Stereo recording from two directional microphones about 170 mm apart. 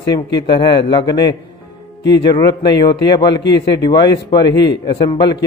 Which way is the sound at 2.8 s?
25° left (ahead or behind).